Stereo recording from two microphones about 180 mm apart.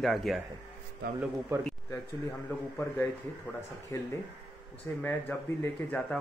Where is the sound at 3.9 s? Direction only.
15° left (ahead or behind).